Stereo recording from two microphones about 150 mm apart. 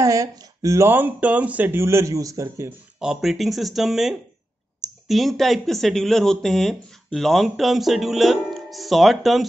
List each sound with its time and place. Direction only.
0.0 s speech: 20° right (ahead or behind)
3.0 s speech: centre (ahead or behind)